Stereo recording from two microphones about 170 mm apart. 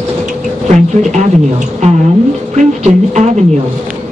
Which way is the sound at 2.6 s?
45° right (ahead or behind).